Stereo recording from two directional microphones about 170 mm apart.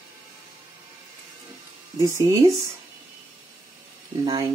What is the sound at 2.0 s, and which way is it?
Speech, 20° right (ahead or behind).